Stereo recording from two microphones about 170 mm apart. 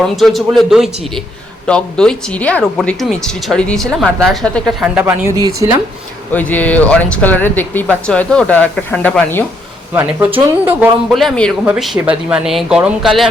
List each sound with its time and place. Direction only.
0.2 s speech: centre (ahead or behind)
4.9 s speech: 10° right (ahead or behind)
6.3 s speech: 10° left (ahead or behind)
9.9 s speech: 15° right (ahead or behind)
11.1 s speech: centre (ahead or behind)